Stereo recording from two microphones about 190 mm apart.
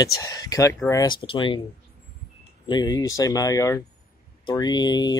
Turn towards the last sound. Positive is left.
turn(degrees=20)  # may be behind; listen again after turning